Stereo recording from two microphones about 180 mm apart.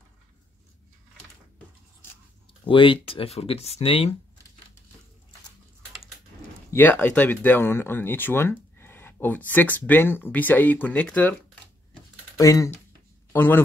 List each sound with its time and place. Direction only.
2.7 s speech: 30° left (ahead or behind)
6.7 s speech: 10° left (ahead or behind)
12.4 s speech: 20° left (ahead or behind)